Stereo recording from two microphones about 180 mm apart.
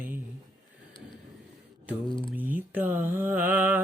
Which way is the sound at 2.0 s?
30° left (ahead or behind).